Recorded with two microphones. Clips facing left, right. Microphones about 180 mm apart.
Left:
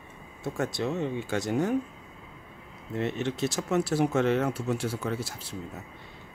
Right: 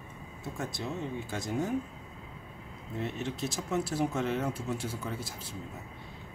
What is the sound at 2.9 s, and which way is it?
Speech, 75° left (ahead or behind).